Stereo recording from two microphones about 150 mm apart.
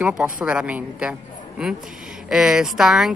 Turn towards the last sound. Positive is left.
turn(degrees=0)  # may be behind; listen again after turning